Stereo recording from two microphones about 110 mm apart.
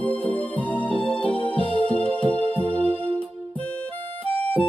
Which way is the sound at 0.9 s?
50° left (ahead or behind).